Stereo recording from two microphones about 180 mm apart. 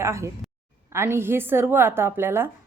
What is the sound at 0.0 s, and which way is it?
A woman's voice, 15° right (ahead or behind).